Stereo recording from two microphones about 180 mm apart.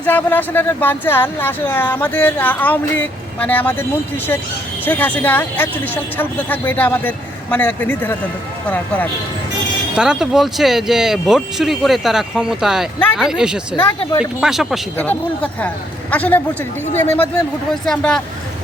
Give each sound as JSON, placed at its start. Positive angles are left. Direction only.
{"t": 0.0, "sound": "speech", "side_deg": 10}
{"t": 4.9, "sound": "speech", "side_deg": 10}
{"t": 10.0, "sound": "speech", "side_deg": -5}
{"t": 14.0, "sound": "speech", "side_deg": 30}
{"t": 14.4, "sound": "speech", "side_deg": 0}
{"t": 14.9, "sound": "speech", "side_deg": 10}
{"t": 17.8, "sound": "speech", "side_deg": 5}